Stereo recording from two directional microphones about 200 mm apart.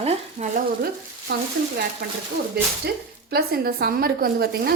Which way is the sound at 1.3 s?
55° right (ahead or behind).